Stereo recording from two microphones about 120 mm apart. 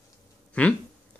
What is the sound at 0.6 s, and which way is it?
Speech, 10° left (ahead or behind).